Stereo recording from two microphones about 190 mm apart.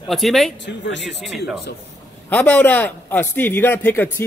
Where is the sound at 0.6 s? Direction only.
70° left (ahead or behind).